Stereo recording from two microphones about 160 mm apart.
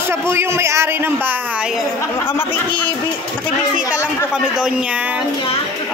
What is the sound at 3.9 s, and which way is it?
Speech, 15° left (ahead or behind).